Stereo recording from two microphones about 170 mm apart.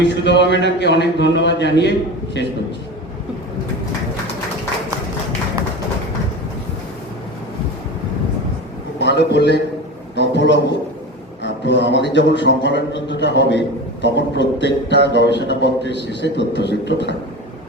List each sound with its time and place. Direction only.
0.0 s speech: 90° left
9.0 s a man's voice: 90° left